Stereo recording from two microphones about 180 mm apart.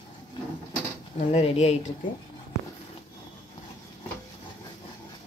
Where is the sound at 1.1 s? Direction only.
35° left (ahead or behind).